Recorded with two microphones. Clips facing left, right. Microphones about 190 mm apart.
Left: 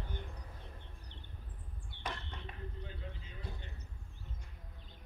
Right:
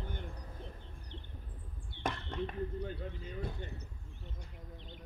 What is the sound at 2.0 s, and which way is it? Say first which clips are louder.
Basketball bounce: right 8 dB; 50° right (ahead or behind).